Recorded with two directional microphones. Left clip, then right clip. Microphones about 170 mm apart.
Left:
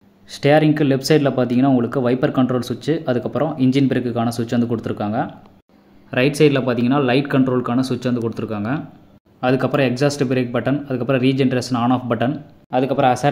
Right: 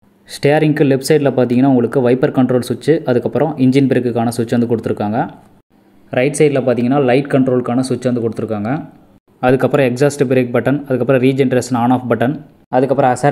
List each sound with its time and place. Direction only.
0.3 s speech: 15° right (ahead or behind)